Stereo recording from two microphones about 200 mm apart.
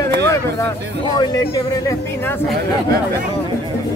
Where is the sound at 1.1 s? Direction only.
20° left (ahead or behind).